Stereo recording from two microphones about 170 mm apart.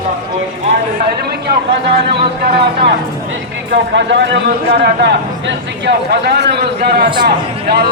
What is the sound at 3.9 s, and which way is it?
A man's voice, 90° right.